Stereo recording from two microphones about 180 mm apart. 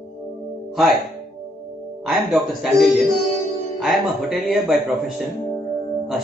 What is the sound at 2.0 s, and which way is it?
Speech, 5° right (ahead or behind).